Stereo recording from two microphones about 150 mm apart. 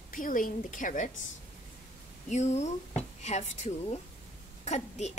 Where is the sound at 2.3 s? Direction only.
50° left (ahead or behind).